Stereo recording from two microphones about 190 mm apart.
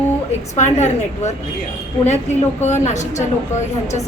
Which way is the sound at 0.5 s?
35° left (ahead or behind).